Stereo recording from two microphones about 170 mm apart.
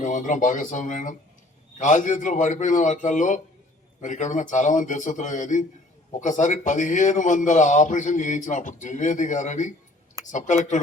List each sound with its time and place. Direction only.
0.0 s a man's voice: 45° left (ahead or behind)